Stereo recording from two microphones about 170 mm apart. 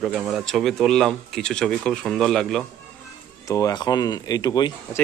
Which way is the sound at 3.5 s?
20° left (ahead or behind).